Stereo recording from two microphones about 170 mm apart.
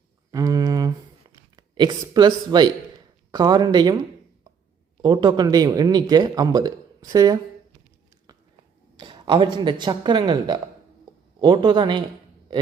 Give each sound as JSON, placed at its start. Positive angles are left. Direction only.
{"t": 0.3, "sound": "a sound", "side_deg": -20}
{"t": 3.3, "sound": "a man's voice", "side_deg": -25}
{"t": 5.0, "sound": "a man's voice", "side_deg": -25}
{"t": 9.0, "sound": "a man's voice", "side_deg": -30}